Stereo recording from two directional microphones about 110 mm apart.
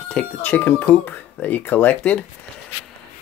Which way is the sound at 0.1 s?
15° left (ahead or behind).